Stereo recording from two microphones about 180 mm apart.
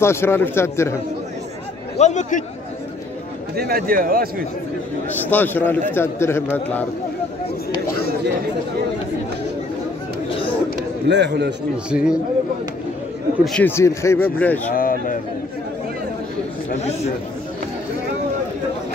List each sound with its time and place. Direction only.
0.0 s speech: 15° left (ahead or behind)
2.0 s speech: 40° left (ahead or behind)
3.5 s speech: 55° right (ahead or behind)
5.3 s speech: 10° left (ahead or behind)
11.1 s a man's voice: 70° right (ahead or behind)
11.9 s speech: 5° right (ahead or behind)
13.4 s speech: 5° left (ahead or behind)
14.8 s a sound: 50° left (ahead or behind)